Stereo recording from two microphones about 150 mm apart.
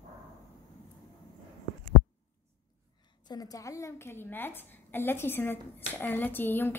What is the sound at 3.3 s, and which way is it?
A woman's voice, 25° left (ahead or behind).